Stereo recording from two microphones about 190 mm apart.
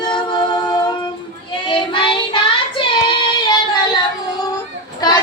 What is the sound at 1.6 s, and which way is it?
Child singing, 25° left (ahead or behind).